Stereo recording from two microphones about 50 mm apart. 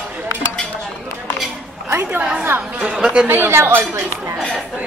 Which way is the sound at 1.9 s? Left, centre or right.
Right.